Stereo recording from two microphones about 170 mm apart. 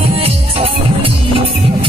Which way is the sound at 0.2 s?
35° right (ahead or behind).